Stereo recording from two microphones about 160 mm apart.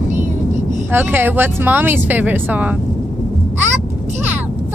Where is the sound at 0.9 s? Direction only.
15° right (ahead or behind).